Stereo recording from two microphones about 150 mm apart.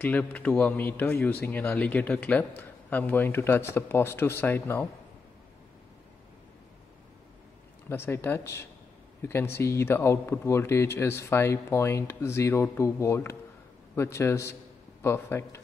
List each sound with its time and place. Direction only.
0.0 s a man's voice: 10° left (ahead or behind)
7.9 s a man's voice: 15° left (ahead or behind)